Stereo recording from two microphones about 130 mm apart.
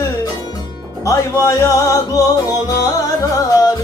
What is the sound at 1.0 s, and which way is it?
Music, 25° left (ahead or behind).